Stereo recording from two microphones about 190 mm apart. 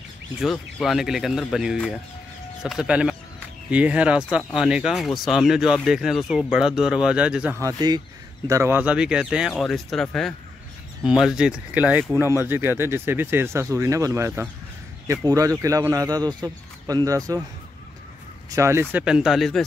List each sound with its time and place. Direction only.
0.4 s speech: centre (ahead or behind); by 17.4 s 20° right (ahead or behind)
18.5 s speech: 15° right (ahead or behind)